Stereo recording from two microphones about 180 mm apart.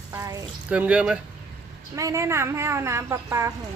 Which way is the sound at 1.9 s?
15° right (ahead or behind).